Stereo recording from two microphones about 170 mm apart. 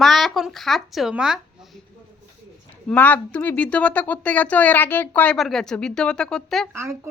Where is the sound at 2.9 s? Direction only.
10° left (ahead or behind).